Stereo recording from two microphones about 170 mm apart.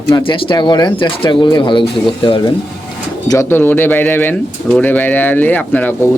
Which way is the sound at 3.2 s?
20° left (ahead or behind).